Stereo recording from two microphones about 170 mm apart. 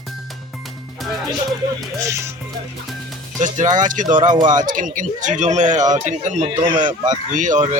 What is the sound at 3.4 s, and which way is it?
Speech, 50° right (ahead or behind).